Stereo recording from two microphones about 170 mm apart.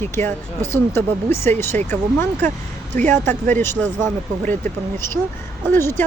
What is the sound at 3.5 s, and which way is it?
Speech, 15° left (ahead or behind).